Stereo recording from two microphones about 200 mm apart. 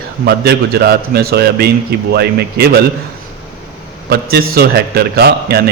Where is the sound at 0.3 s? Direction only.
50° right (ahead or behind).